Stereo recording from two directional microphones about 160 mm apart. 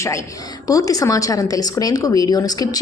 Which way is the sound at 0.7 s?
20° left (ahead or behind).